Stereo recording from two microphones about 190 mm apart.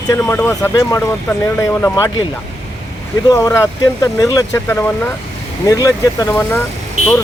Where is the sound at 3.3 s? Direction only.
15° left (ahead or behind).